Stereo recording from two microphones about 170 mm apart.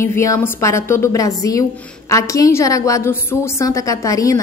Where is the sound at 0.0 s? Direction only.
15° left (ahead or behind).